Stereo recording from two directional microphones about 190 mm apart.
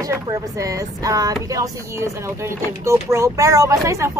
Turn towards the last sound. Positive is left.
turn(degrees=-15)  # may be behind; listen again after turning